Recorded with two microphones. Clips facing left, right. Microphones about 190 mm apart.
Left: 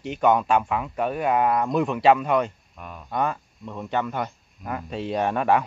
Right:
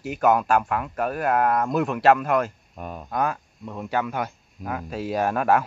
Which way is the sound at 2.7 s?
35° right (ahead or behind).